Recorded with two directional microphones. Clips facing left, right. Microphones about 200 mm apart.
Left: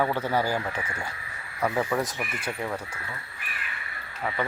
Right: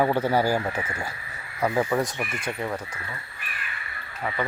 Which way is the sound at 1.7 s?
10° right (ahead or behind).